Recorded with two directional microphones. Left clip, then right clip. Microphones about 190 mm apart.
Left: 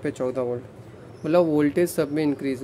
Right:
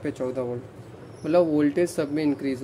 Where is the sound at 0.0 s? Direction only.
20° left (ahead or behind).